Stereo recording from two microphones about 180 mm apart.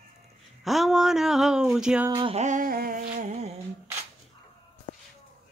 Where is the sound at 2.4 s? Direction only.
45° right (ahead or behind).